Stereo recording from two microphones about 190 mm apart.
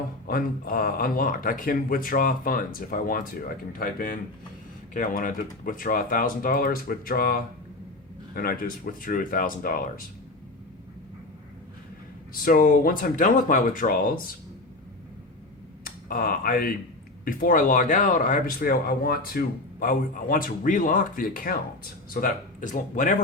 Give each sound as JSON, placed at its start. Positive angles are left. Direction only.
{"t": 0.3, "sound": "speech", "side_deg": 50}
{"t": 12.3, "sound": "speech", "side_deg": 50}
{"t": 15.8, "sound": "speech", "side_deg": 50}